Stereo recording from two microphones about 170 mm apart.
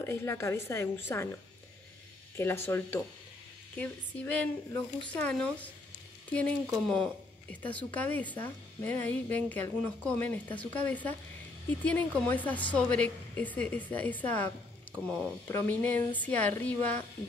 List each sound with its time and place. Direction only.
0.0 s a woman's voice: 15° left (ahead or behind)
2.3 s a woman's voice: 15° left (ahead or behind)
6.7 s a woman's voice: 5° left (ahead or behind)
15.0 s speech: 5° right (ahead or behind)
15.4 s a woman's voice: 10° left (ahead or behind)